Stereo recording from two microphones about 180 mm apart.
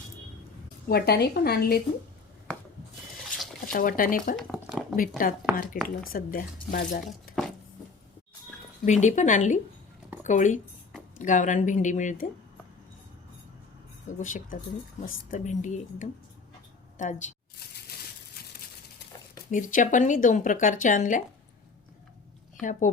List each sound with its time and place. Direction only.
0.9 s speech: 60° left (ahead or behind)
3.7 s speech: 50° left (ahead or behind)
4.4 s a sound: centre (ahead or behind)
4.9 s speech: 50° left (ahead or behind)
8.8 s speech: 45° left (ahead or behind)
14.2 s speech: 45° left (ahead or behind)
19.5 s speech: 45° left (ahead or behind)
22.6 s speech: 45° left (ahead or behind)